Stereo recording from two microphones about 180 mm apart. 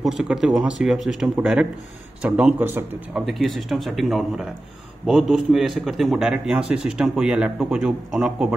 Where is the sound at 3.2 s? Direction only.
Centre (ahead or behind).